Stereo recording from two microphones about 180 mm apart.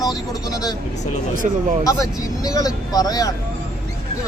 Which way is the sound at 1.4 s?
40° right (ahead or behind).